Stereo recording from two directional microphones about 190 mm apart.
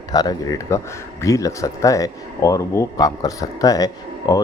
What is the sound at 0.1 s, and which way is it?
Speech, 20° left (ahead or behind).